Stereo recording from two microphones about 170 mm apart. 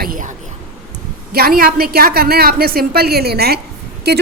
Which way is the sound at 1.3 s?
60° right (ahead or behind).